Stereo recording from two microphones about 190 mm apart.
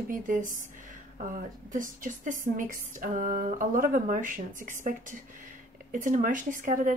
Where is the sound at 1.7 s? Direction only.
45° right (ahead or behind).